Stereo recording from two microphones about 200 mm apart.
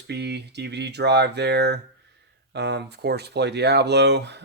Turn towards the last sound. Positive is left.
turn(degrees=-55)  # may be behind; listen again after turning